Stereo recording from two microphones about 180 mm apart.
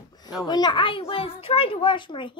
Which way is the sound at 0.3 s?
20° left (ahead or behind).